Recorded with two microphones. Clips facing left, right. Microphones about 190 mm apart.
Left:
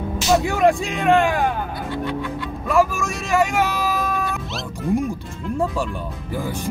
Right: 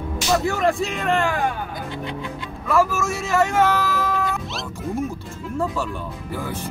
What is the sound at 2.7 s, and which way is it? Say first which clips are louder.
Speech: left 1 dB; 15° left (ahead or behind).